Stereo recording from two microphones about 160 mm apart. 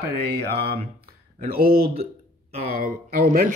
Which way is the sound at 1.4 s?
65° right (ahead or behind).